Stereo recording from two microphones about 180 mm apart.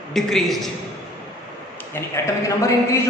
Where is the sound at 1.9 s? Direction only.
15° left (ahead or behind).